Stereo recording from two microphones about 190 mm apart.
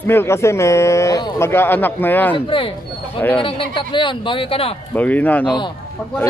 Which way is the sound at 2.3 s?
25° left (ahead or behind).